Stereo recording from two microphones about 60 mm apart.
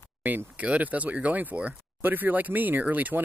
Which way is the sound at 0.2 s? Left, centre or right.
Right.